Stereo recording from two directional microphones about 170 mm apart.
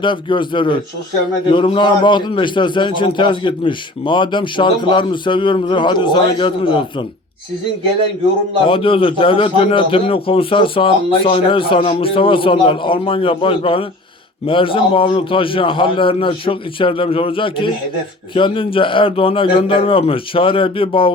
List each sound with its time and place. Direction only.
0.0 s a man's voice: 30° left (ahead or behind)
8.6 s speech: 30° left (ahead or behind)